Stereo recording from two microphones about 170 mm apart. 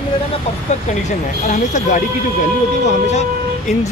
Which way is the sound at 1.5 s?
45° left (ahead or behind).